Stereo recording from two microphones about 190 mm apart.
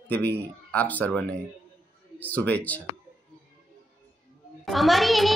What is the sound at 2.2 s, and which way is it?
Speech, 10° left (ahead or behind).